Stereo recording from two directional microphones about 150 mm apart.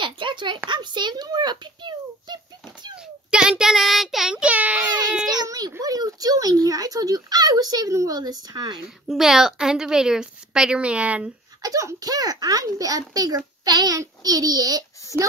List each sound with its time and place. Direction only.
0.0 s a sound: 30° right (ahead or behind)
3.3 s speech: 5° right (ahead or behind)
5.3 s baby cry: 25° right (ahead or behind)
5.7 s a child's voice: 25° right (ahead or behind)
9.1 s a woman's voice: 5° right (ahead or behind)
11.6 s a child's voice: 25° right (ahead or behind)